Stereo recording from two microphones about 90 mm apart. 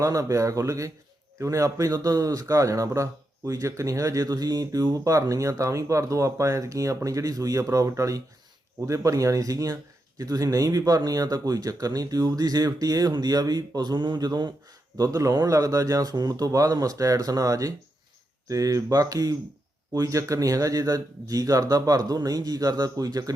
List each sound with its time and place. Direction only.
0.0 s speech: 40° right (ahead or behind)
14.9 s speech: 40° right (ahead or behind)